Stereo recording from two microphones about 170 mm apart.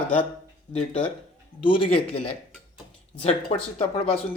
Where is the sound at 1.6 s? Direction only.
30° left (ahead or behind).